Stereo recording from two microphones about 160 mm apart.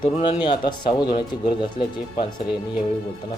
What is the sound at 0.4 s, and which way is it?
Speech, 30° left (ahead or behind).